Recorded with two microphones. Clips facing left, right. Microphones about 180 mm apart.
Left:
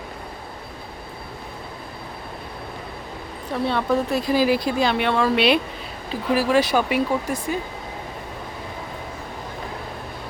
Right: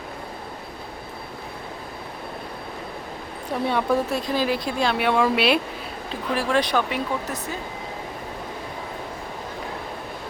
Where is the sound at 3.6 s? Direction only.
10° right (ahead or behind).